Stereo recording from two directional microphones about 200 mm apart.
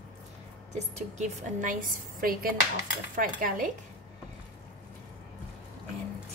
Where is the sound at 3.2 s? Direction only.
45° right (ahead or behind).